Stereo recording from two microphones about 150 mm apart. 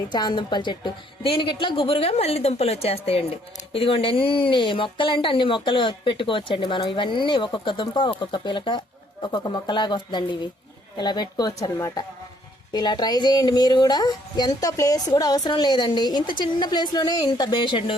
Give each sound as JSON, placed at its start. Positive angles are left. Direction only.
{"t": 0.1, "sound": "speech", "side_deg": 30}